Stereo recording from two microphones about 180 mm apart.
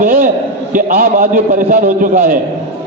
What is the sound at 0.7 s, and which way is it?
A man's voice, 50° right (ahead or behind).